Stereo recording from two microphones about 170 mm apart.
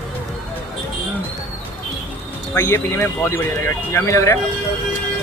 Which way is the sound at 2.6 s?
15° left (ahead or behind).